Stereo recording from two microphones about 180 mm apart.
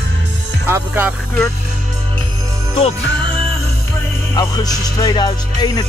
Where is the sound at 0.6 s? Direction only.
10° right (ahead or behind).